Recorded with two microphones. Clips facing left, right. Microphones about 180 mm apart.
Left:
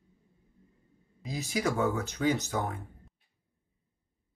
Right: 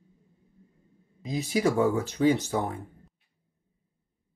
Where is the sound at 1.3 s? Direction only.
30° right (ahead or behind).